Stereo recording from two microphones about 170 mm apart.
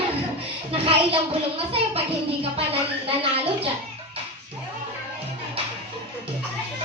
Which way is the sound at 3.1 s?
35° right (ahead or behind).